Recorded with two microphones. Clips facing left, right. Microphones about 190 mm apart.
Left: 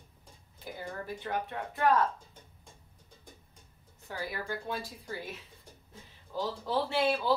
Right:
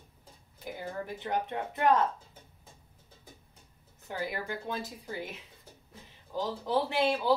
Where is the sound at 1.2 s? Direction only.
20° right (ahead or behind).